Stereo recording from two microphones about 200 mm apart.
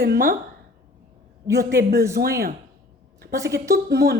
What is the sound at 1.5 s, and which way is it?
Speech, 15° right (ahead or behind).